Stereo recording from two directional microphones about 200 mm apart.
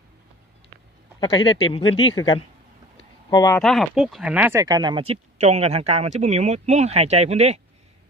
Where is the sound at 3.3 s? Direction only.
20° left (ahead or behind).